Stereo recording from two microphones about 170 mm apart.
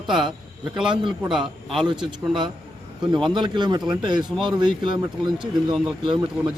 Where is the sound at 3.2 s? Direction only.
25° right (ahead or behind).